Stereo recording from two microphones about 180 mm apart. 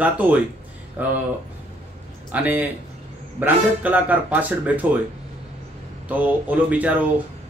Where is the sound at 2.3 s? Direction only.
10° right (ahead or behind).